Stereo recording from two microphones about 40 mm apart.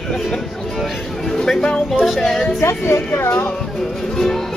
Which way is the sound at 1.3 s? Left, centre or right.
Centre.